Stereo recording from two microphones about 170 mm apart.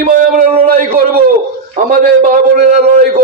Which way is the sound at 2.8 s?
65° right (ahead or behind).